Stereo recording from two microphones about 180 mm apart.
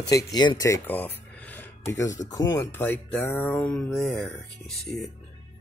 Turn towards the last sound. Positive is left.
turn(degrees=5)  # may be behind; listen again after turning